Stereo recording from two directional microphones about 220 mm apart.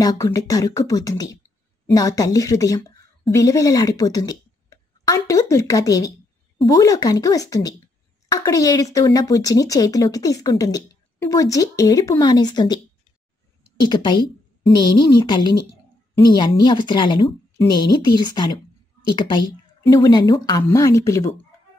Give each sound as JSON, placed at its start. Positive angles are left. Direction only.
{"t": 0.0, "sound": "a woman's voice", "side_deg": 15}
{"t": 13.8, "sound": "speech", "side_deg": 20}